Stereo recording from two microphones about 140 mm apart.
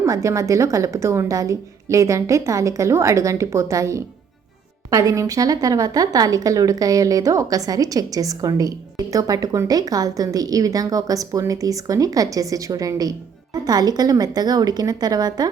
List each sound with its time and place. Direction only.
0.0 s a woman's voice: 20° right (ahead or behind)